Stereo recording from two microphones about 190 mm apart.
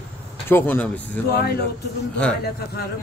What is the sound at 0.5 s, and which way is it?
Speech, 10° left (ahead or behind).